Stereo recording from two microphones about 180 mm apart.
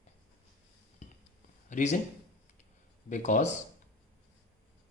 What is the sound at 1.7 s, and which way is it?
Speech, 45° left (ahead or behind).